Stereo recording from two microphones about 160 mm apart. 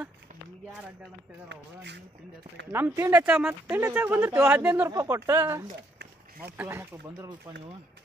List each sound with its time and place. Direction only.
1.5 s speech: 90° right
3.0 s speech: 10° right (ahead or behind)
4.8 s speech: 20° right (ahead or behind)